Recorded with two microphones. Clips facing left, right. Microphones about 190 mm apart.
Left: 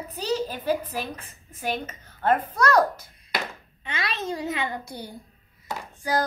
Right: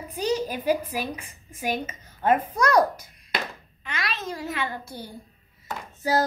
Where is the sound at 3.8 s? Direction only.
25° left (ahead or behind).